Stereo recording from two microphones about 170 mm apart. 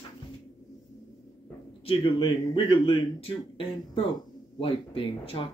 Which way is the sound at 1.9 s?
30° left (ahead or behind).